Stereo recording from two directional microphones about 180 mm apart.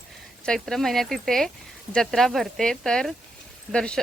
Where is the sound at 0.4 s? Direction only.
5° left (ahead or behind).